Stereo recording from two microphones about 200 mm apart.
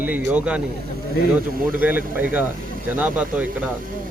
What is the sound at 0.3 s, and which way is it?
Speech, 5° right (ahead or behind).